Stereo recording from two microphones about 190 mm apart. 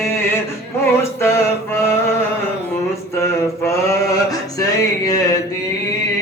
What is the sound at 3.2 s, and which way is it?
Mantra, 15° left (ahead or behind).